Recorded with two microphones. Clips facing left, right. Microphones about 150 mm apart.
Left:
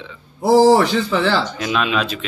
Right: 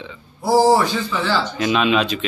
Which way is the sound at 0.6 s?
90° left.